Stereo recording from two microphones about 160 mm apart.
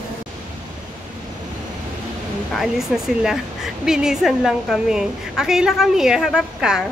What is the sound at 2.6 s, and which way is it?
A woman's voice, centre (ahead or behind).